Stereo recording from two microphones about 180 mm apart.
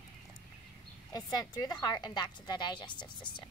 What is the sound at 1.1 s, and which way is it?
A woman's voice, 20° left (ahead or behind).